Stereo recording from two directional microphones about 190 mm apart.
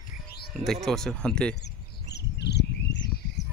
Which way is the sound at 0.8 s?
Centre (ahead or behind).